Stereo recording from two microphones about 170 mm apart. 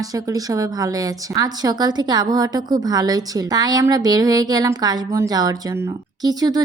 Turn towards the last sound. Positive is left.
turn(degrees=-20)  # may be behind; listen again after turning